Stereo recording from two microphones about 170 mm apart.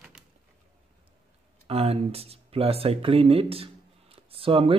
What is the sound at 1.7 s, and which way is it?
Speech, 35° right (ahead or behind).